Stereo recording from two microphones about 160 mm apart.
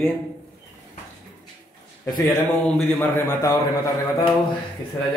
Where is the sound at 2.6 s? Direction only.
10° left (ahead or behind).